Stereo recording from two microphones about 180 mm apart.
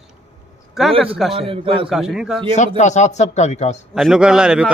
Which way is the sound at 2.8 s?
40° left (ahead or behind).